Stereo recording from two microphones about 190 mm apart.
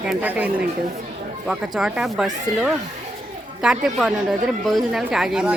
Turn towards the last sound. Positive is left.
turn(degrees=-5)  # may be behind; listen again after turning